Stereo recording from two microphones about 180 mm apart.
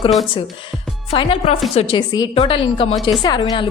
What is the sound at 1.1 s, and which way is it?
Speech, 35° left (ahead or behind).